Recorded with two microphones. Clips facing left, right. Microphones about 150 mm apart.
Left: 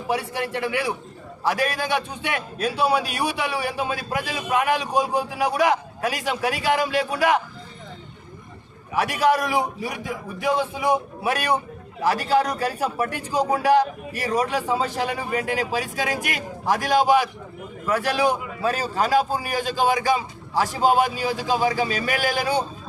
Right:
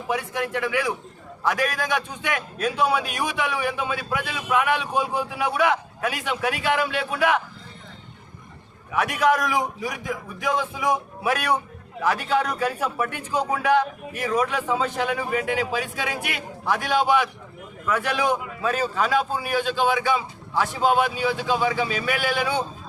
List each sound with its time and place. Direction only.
0.1 s a man's voice: 35° left (ahead or behind)
8.9 s a man's voice: 30° left (ahead or behind)